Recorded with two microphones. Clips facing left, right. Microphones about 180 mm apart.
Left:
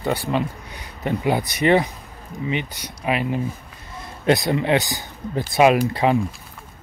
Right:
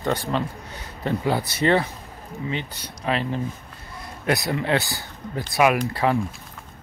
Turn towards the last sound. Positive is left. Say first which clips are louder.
# left 4 dB
turn(degrees=20)  # may be behind; listen again after turning